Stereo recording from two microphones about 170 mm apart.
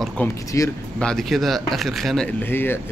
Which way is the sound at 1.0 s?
5° left (ahead or behind).